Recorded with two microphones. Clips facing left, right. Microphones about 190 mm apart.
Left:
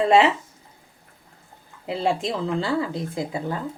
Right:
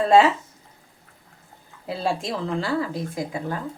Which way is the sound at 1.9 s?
20° left (ahead or behind).